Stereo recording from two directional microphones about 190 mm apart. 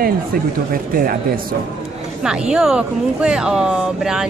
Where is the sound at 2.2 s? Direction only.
5° right (ahead or behind).